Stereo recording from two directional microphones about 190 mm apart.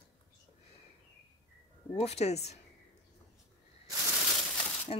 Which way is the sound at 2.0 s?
35° left (ahead or behind).